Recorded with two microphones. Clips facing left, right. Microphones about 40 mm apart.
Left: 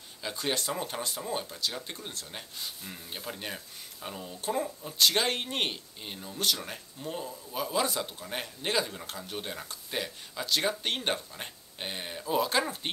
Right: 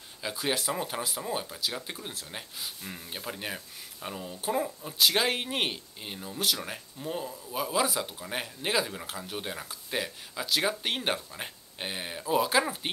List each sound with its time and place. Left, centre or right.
0.2 s speech: centre